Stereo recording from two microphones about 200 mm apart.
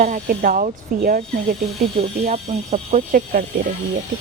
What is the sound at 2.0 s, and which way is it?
Speech, 35° right (ahead or behind).